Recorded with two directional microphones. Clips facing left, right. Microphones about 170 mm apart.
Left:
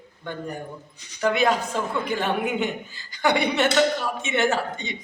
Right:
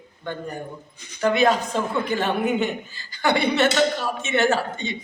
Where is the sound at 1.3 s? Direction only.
10° left (ahead or behind).